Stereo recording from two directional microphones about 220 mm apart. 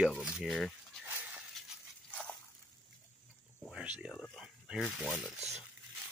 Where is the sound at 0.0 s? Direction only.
5° right (ahead or behind).